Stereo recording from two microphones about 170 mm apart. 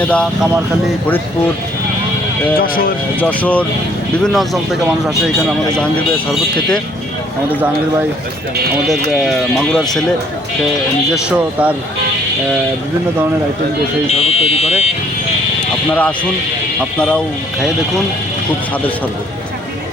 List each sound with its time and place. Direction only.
0.0 s speech: 5° left (ahead or behind)
2.6 s speech: 60° left (ahead or behind)
3.2 s speech: 10° left (ahead or behind)
9.0 s speech: centre (ahead or behind)
11.1 s speech: 5° right (ahead or behind)
14.1 s fire alarm: 35° left (ahead or behind)
15.9 s speech: 10° left (ahead or behind)